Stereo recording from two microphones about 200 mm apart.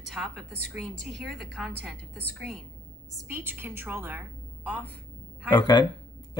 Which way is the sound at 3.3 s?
10° right (ahead or behind).